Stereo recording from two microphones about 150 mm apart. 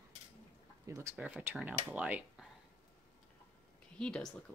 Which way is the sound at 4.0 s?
5° left (ahead or behind).